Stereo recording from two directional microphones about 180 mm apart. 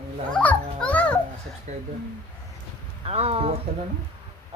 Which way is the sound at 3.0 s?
35° right (ahead or behind).